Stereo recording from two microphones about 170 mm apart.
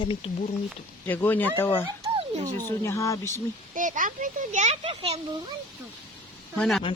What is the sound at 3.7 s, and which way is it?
Speech, 50° right (ahead or behind).